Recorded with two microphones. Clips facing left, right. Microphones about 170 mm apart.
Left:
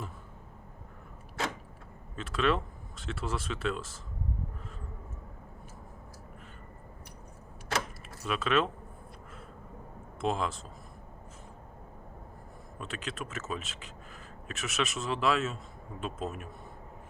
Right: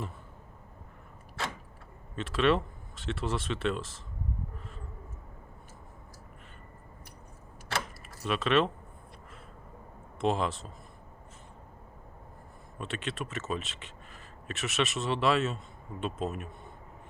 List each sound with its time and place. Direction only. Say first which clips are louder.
2.1 s speech: right 3 dB; centre (ahead or behind)
8.2 s speech: right 2 dB; centre (ahead or behind)
10.2 s speech: right 2 dB; centre (ahead or behind)
12.8 s a man's voice: right 3 dB; centre (ahead or behind)